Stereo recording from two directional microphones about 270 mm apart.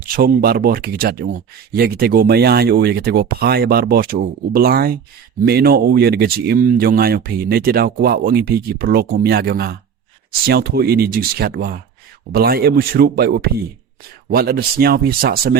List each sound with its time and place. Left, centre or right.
0.2 s speech: right